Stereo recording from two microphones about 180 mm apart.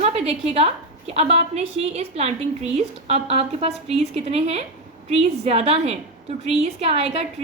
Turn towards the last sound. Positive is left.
turn(degrees=-35)  # may be behind; listen again after turning